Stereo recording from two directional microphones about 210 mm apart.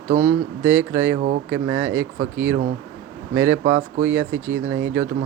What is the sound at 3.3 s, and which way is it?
Speech, 10° right (ahead or behind).